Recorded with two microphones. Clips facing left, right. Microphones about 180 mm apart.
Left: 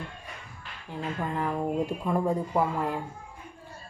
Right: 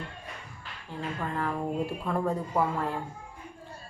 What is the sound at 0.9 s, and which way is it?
A woman's voice, 15° left (ahead or behind).